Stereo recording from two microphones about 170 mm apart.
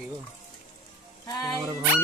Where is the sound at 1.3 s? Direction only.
20° left (ahead or behind).